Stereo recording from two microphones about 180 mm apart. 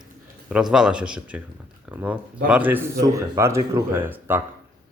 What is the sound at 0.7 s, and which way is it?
Speech, 5° right (ahead or behind).